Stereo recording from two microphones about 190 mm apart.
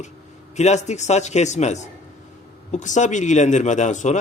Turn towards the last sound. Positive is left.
turn(degrees=40)  # may be behind; listen again after turning